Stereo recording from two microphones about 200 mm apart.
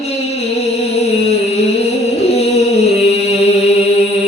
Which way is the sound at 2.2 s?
30° left (ahead or behind).